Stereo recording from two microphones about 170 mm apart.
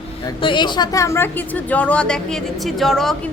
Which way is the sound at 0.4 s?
25° left (ahead or behind).